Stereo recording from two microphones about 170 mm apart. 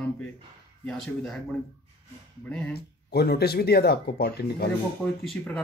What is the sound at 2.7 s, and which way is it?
Speech, 70° left (ahead or behind).